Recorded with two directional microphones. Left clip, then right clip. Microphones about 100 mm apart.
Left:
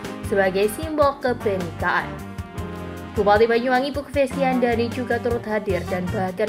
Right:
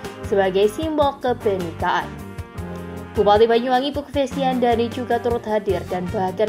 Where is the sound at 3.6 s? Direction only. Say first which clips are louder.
Right 1 dB; 40° left (ahead or behind).